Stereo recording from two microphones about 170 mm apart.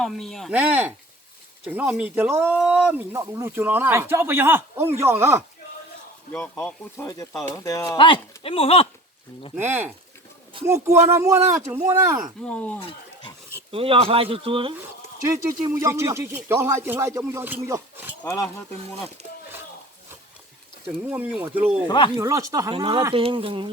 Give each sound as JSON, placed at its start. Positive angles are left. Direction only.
{"t": 0.0, "sound": "speech", "side_deg": 0}
{"t": 6.3, "sound": "speech", "side_deg": 5}
{"t": 9.6, "sound": "speech", "side_deg": -10}
{"t": 12.4, "sound": "speech", "side_deg": 5}
{"t": 13.7, "sound": "speech", "side_deg": -35}
{"t": 15.3, "sound": "speech", "side_deg": -20}
{"t": 18.2, "sound": "speech", "side_deg": 15}
{"t": 20.8, "sound": "speech", "side_deg": -10}
{"t": 21.8, "sound": "speech", "side_deg": 25}
{"t": 22.2, "sound": "speech", "side_deg": -20}
{"t": 22.7, "sound": "speech", "side_deg": -30}